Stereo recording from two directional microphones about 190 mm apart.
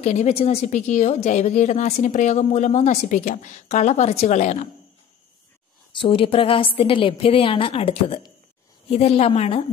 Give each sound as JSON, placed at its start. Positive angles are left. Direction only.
{"t": 0.0, "sound": "a woman's voice", "side_deg": 35}
{"t": 5.9, "sound": "a woman's voice", "side_deg": 25}